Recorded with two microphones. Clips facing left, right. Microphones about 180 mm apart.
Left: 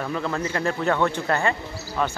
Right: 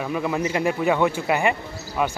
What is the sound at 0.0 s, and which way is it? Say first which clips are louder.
A man's voice: right 2 dB; 10° right (ahead or behind).